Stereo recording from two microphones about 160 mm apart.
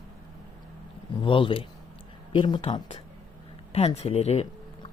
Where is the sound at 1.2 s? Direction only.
35° left (ahead or behind).